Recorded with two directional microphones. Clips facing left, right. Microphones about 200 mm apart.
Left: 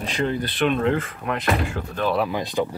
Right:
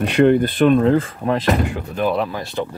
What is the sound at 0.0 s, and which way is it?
Speech, 65° right (ahead or behind).